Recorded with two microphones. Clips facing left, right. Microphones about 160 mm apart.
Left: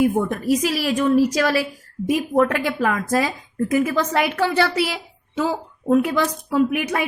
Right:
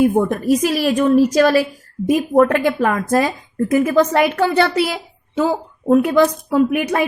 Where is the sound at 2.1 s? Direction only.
45° right (ahead or behind).